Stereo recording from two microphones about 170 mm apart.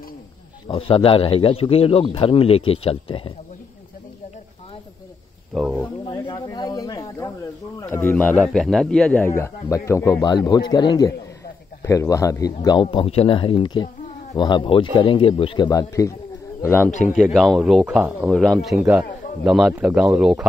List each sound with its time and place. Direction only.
0.7 s a man's voice: 30° left (ahead or behind)
6.0 s snake: 25° left (ahead or behind)
7.8 s a man's voice: 15° left (ahead or behind)
17.1 s speech: centre (ahead or behind)